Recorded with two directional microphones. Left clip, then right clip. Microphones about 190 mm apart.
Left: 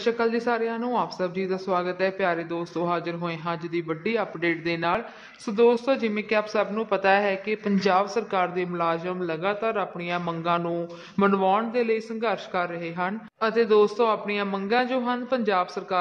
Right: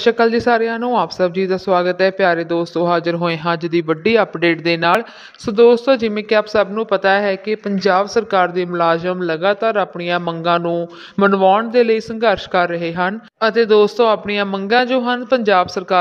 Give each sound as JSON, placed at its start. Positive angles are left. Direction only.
{"t": 0.0, "sound": "a man's voice", "side_deg": -40}